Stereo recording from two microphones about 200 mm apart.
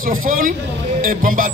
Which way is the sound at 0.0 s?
45° right (ahead or behind).